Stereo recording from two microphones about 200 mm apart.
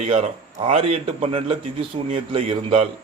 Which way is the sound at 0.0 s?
30° right (ahead or behind).